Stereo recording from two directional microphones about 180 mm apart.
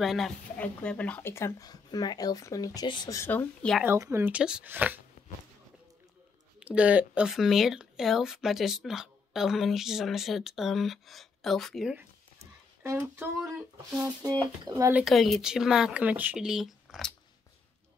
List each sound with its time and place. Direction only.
0.0 s speech: centre (ahead or behind)
3.8 s speech: 15° right (ahead or behind)
6.6 s speech: 5° right (ahead or behind)
12.8 s speech: 15° right (ahead or behind)